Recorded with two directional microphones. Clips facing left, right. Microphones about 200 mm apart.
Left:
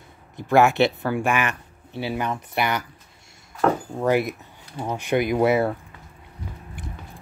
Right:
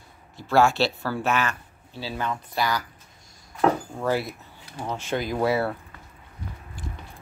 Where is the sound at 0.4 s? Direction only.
20° left (ahead or behind).